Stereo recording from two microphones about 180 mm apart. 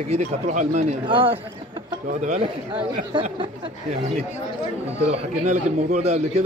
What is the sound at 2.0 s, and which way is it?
Speech, 40° right (ahead or behind).